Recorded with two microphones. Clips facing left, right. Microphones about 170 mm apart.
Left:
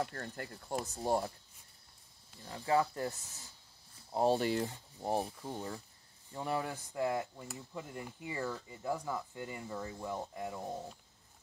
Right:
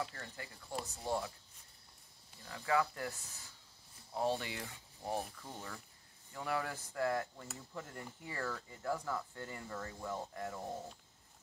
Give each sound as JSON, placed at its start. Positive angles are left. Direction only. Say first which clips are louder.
{"t": 0.0, "sound": "speech", "louder": "left 5 dB", "side_deg": 55}
{"t": 2.4, "sound": "speech", "louder": "left 3 dB", "side_deg": 35}
{"t": 4.1, "sound": "speech", "louder": "left 7 dB", "side_deg": 35}
{"t": 6.3, "sound": "speech", "louder": "left 2 dB", "side_deg": 20}